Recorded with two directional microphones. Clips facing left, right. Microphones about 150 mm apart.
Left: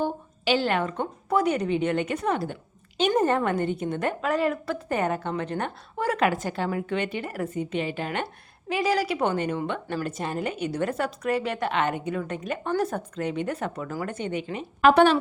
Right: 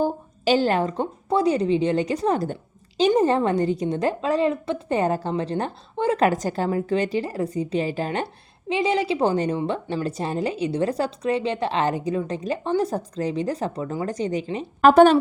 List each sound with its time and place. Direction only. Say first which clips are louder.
0.0 s a woman's voice: right 5 dB; 40° right (ahead or behind)
3.2 s a woman's voice: right 4 dB; 30° right (ahead or behind)
6.2 s a woman's voice: right 4 dB; 40° right (ahead or behind)
8.7 s a woman's voice: right 3 dB; 25° right (ahead or behind); by 15.1 s 40° right (ahead or behind)